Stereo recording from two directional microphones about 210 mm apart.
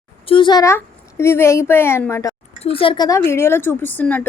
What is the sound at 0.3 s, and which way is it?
Speech, 25° left (ahead or behind).